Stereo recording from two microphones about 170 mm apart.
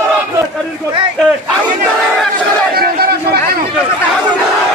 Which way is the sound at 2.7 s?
65° right (ahead or behind).